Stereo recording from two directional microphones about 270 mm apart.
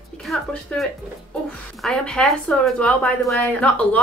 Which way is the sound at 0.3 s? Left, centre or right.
Centre.